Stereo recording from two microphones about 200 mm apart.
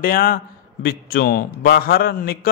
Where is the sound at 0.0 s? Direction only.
45° left (ahead or behind).